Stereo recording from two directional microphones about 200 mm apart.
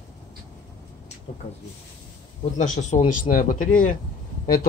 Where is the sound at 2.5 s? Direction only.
40° left (ahead or behind).